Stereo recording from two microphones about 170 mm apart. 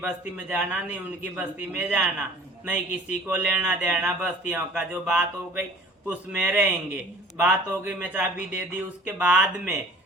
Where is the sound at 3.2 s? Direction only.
10° right (ahead or behind).